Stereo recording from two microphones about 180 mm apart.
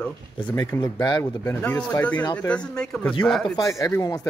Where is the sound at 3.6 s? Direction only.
20° left (ahead or behind).